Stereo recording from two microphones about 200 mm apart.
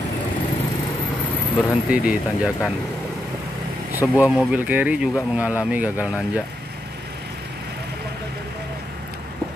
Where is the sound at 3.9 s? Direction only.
10° right (ahead or behind).